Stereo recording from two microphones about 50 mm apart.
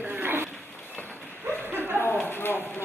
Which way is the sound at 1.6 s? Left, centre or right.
Right.